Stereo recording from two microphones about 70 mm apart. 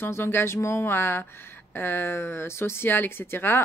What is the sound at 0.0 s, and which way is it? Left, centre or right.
Speech, left.